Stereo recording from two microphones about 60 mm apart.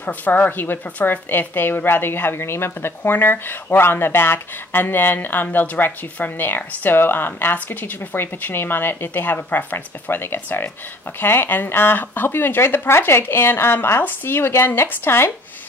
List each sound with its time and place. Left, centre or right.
0.0 s speech: left